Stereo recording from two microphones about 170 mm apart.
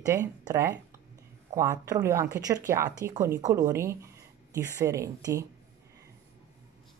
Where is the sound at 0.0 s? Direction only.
20° right (ahead or behind).